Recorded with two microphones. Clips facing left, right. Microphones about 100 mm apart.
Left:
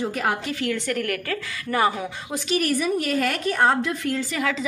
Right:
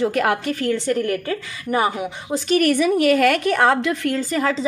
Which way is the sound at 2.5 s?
70° right (ahead or behind).